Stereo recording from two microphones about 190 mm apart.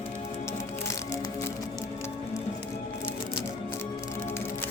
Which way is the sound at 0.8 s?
15° left (ahead or behind).